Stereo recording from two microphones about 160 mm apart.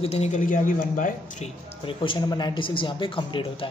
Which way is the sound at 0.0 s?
40° left (ahead or behind).